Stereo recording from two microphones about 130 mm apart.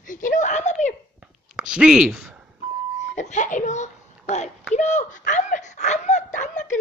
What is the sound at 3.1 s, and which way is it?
A child's voice, 65° left (ahead or behind).